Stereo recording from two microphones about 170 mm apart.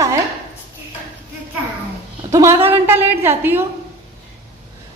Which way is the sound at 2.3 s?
15° right (ahead or behind).